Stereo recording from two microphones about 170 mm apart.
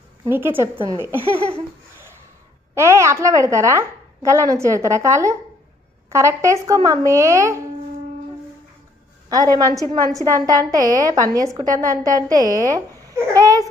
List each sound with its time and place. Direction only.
0.3 s a woman's voice: 10° right (ahead or behind)
2.7 s a woman's voice: 15° right (ahead or behind)
9.3 s a woman's voice: 20° right (ahead or behind)